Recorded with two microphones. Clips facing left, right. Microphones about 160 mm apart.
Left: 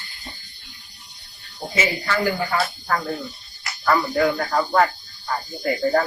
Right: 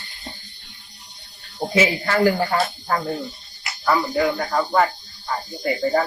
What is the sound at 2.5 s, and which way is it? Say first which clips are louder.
Speech: right 1 dB; 25° right (ahead or behind).